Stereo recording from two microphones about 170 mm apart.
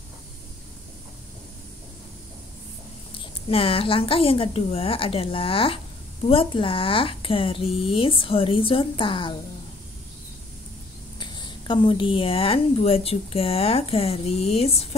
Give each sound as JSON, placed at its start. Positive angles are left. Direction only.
{"t": 3.1, "sound": "a woman's voice", "side_deg": 30}
{"t": 11.1, "sound": "a woman's voice", "side_deg": 25}